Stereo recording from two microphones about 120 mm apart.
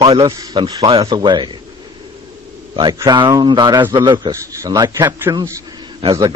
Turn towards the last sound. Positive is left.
turn(degrees=-35)  # may be behind; listen again after turning